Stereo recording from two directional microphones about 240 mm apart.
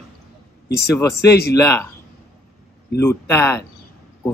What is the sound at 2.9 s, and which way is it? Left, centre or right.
Speech, centre.